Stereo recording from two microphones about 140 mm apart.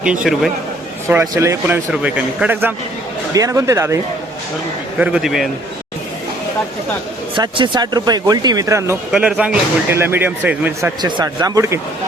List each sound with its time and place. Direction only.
0.0 s speech: 5° right (ahead or behind)
1.0 s speech: 20° right (ahead or behind)
4.9 s a man's voice: 10° right (ahead or behind)
7.3 s speech: 35° right (ahead or behind)
9.1 s speech: 5° right (ahead or behind)
11.0 s speech: 25° right (ahead or behind)